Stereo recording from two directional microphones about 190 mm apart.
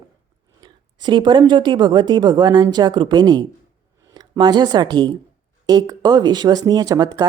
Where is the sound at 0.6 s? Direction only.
25° right (ahead or behind).